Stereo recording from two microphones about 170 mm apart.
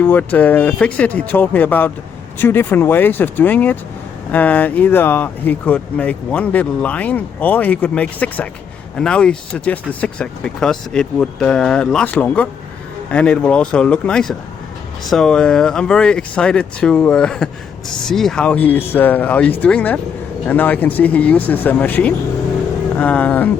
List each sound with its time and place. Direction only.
0.0 s speech: 10° left (ahead or behind)